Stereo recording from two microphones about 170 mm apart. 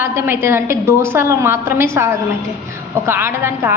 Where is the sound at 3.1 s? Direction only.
15° right (ahead or behind).